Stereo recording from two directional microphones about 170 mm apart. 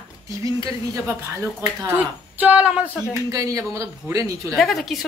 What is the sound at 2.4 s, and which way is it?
Speech, 10° right (ahead or behind).